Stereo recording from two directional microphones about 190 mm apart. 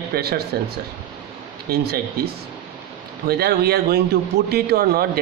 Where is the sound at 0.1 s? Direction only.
55° right (ahead or behind).